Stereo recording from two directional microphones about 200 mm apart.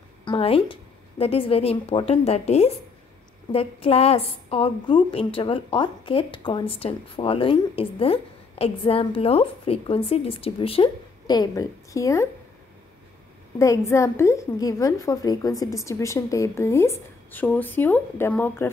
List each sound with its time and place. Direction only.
0.2 s a woman's voice: 25° left (ahead or behind)
13.6 s a woman's voice: 15° left (ahead or behind)